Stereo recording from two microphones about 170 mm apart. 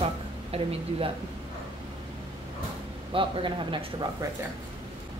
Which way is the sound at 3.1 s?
30° right (ahead or behind).